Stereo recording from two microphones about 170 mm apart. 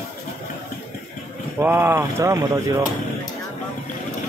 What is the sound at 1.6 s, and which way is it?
Speech, 10° right (ahead or behind).